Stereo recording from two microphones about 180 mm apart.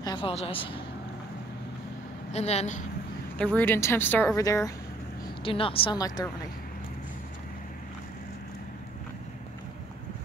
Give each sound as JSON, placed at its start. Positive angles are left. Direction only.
{"t": 0.0, "sound": "a woman's voice", "side_deg": 25}
{"t": 2.3, "sound": "a woman's voice", "side_deg": 35}
{"t": 3.5, "sound": "a woman's voice", "side_deg": 10}
{"t": 5.4, "sound": "speech", "side_deg": 30}